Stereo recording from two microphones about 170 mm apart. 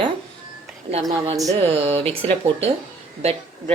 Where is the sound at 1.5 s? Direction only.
35° right (ahead or behind).